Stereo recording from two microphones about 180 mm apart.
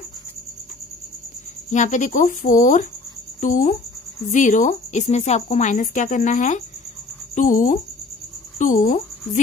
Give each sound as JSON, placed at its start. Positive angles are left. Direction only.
{"t": 1.7, "sound": "a woman's voice", "side_deg": 45}